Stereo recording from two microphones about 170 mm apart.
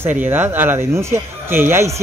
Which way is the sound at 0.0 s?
10° right (ahead or behind).